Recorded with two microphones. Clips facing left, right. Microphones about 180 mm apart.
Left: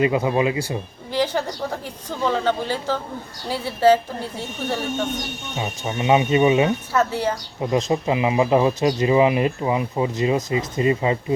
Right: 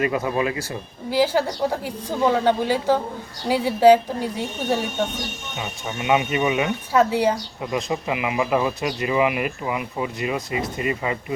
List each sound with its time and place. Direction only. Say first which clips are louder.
0.0 s speech: left 3 dB; 20° left (ahead or behind)
1.1 s a woman's voice: right 3 dB; 10° right (ahead or behind)
5.5 s speech: left 4 dB; 30° left (ahead or behind)
6.9 s a woman's voice: right 3 dB; 15° right (ahead or behind)
7.6 s speech: left 7 dB; 30° left (ahead or behind)